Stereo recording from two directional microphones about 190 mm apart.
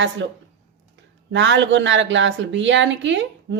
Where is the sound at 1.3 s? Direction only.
70° right (ahead or behind).